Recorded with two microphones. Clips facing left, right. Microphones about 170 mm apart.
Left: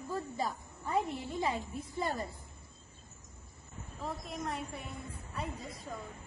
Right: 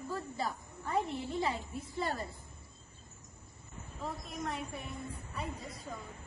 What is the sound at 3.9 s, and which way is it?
Speech, centre (ahead or behind).